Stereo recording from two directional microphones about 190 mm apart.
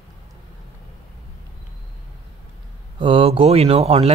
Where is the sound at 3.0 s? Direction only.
30° right (ahead or behind).